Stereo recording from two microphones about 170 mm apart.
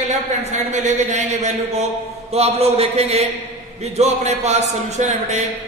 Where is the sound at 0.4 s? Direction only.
45° right (ahead or behind).